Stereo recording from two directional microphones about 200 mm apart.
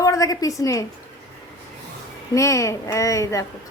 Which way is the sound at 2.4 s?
15° left (ahead or behind).